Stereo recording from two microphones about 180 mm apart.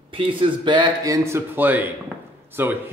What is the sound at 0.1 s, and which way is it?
A man's voice, 30° right (ahead or behind).